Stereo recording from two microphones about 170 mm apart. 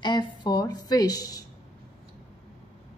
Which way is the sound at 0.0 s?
25° left (ahead or behind).